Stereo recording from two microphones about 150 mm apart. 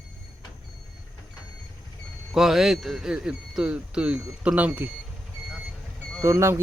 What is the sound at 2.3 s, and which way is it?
Speech, centre (ahead or behind).